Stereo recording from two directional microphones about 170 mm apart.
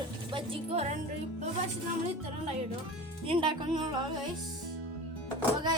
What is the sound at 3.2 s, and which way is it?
Music, 30° right (ahead or behind).